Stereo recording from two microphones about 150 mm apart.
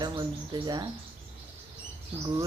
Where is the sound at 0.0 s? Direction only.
30° right (ahead or behind).